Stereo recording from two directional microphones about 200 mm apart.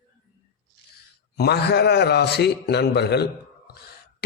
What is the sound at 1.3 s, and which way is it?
A man's voice, 55° left (ahead or behind).